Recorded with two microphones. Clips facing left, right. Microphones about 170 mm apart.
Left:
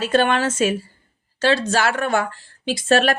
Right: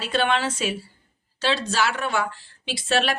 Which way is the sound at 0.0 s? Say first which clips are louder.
Left 5 dB; 45° left (ahead or behind).